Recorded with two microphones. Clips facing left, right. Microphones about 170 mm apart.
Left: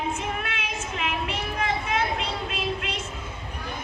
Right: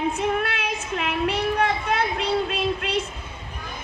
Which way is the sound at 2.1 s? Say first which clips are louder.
Right 7 dB; 35° right (ahead or behind).